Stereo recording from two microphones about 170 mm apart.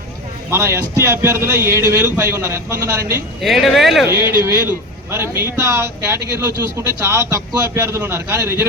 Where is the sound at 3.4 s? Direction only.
Centre (ahead or behind).